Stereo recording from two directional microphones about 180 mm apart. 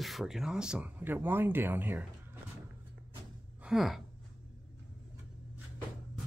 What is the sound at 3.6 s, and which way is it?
Speech, centre (ahead or behind).